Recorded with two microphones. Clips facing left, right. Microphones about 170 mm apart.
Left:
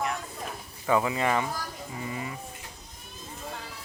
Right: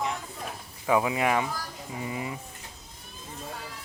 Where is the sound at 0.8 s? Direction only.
10° right (ahead or behind).